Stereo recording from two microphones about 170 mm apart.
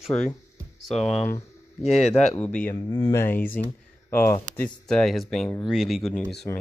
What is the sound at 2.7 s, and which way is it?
Speech, 25° left (ahead or behind).